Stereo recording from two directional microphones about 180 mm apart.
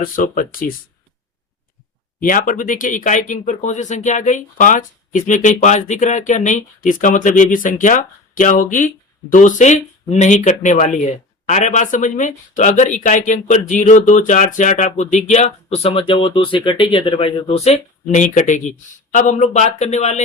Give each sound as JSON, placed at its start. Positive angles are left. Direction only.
{"t": 0.0, "sound": "speech", "side_deg": 50}
{"t": 2.2, "sound": "speech", "side_deg": 50}